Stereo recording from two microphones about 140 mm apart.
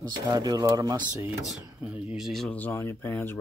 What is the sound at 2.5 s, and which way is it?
Speech, 15° left (ahead or behind).